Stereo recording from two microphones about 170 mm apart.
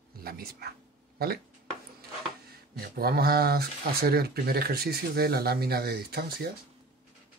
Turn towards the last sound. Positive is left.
turn(degrees=-70)  # may be behind; listen again after turning